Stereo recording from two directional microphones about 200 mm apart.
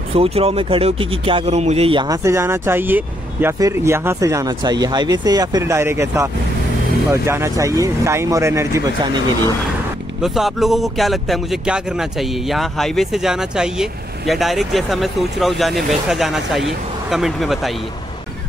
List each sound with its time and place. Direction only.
0.1 s speech: 30° right (ahead or behind)
10.2 s speech: centre (ahead or behind)